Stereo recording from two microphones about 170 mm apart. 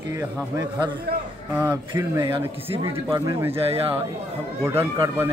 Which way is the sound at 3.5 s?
35° right (ahead or behind).